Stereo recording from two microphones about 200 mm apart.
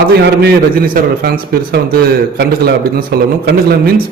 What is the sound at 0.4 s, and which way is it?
Speech, 50° right (ahead or behind).